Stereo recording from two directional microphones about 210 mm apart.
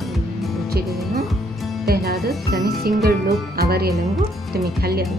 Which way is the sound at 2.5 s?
50° right (ahead or behind).